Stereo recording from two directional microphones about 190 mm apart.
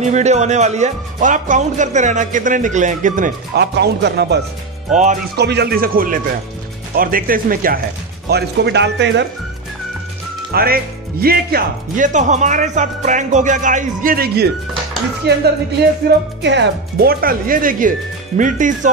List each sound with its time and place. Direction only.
0.0 s speech: 35° right (ahead or behind)
3.7 s speech: 60° right (ahead or behind)
8.3 s speech: 60° right (ahead or behind)
10.5 s speech: 50° right (ahead or behind)